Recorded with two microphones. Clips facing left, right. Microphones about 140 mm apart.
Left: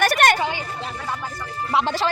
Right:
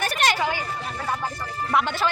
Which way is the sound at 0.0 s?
75° left (ahead or behind).